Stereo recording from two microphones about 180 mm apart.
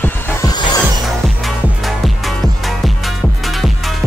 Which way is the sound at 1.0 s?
Centre (ahead or behind).